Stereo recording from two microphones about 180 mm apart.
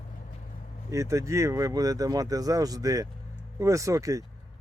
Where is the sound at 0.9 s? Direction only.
15° right (ahead or behind).